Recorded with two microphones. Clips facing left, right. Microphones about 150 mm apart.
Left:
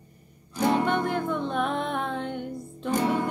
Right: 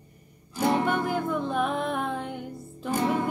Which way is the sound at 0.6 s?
10° right (ahead or behind).